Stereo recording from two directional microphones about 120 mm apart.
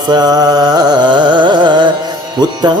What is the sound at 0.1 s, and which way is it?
Music, 35° right (ahead or behind).